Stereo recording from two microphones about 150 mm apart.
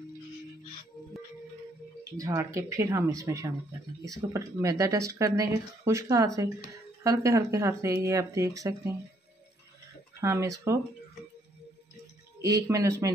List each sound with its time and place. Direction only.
2.1 s speech: 20° right (ahead or behind)
10.2 s speech: 20° right (ahead or behind)
12.4 s speech: 20° right (ahead or behind)